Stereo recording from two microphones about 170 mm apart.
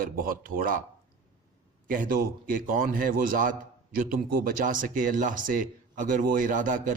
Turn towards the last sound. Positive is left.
turn(degrees=-50)  # may be behind; listen again after turning